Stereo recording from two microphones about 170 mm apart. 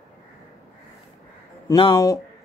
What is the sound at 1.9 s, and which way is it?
Speech, 20° left (ahead or behind).